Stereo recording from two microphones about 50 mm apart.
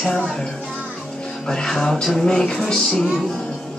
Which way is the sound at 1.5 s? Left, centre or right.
Centre.